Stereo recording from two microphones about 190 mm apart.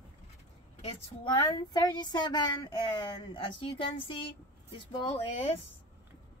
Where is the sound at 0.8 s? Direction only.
25° left (ahead or behind).